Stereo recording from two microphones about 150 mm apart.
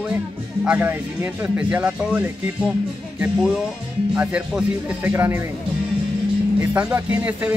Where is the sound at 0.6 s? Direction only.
15° right (ahead or behind).